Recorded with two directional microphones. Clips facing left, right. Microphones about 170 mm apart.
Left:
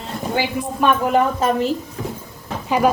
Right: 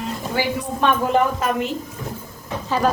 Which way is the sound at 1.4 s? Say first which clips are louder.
Left 4 dB; 35° left (ahead or behind).